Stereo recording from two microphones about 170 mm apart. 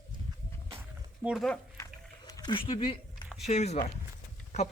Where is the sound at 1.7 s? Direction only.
20° left (ahead or behind).